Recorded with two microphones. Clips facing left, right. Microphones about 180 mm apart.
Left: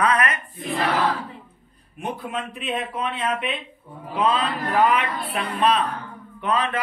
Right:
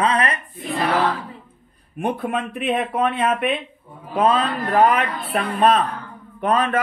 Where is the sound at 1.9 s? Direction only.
55° right (ahead or behind).